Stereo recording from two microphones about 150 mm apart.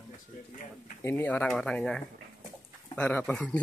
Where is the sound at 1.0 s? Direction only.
15° left (ahead or behind).